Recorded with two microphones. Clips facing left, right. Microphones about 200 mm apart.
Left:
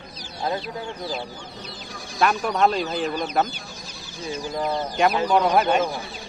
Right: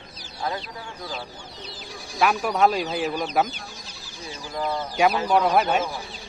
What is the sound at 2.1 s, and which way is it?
Speech, 10° right (ahead or behind).